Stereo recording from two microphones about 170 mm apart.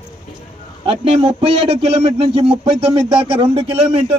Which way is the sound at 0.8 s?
35° right (ahead or behind).